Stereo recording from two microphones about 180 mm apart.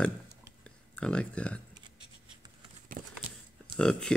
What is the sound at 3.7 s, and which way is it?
Speech, 5° left (ahead or behind).